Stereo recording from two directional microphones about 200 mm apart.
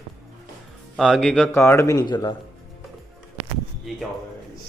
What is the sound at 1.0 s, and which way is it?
Speech, centre (ahead or behind).